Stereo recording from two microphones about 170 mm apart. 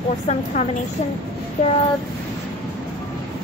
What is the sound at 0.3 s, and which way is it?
Speech, 45° left (ahead or behind).